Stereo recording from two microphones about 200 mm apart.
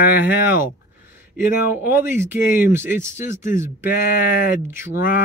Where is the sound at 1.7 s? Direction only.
10° right (ahead or behind).